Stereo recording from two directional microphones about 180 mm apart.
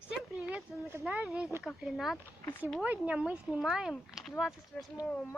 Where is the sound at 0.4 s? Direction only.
10° right (ahead or behind).